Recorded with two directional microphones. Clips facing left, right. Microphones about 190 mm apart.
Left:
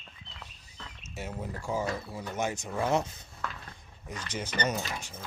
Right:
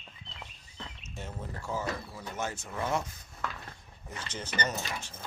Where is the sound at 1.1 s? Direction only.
10° left (ahead or behind).